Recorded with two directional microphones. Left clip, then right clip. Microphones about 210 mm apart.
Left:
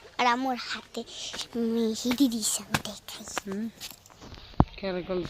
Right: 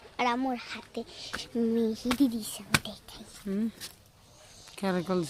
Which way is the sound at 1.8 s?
10° left (ahead or behind).